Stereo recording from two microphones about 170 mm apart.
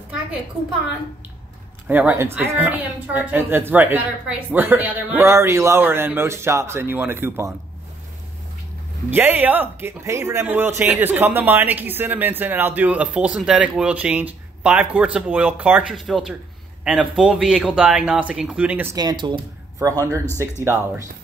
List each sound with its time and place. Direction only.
1.9 s speech: 10° right (ahead or behind)
9.1 s speech: 10° right (ahead or behind)
18.9 s speech: 25° right (ahead or behind)